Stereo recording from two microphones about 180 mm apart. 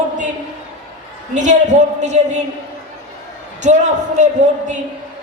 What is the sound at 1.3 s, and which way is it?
Speech, 40° right (ahead or behind).